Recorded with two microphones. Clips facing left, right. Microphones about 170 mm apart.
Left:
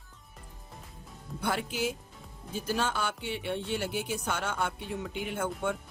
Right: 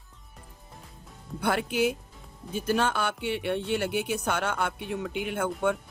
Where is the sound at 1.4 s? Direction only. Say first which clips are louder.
Right 6 dB; 60° right (ahead or behind).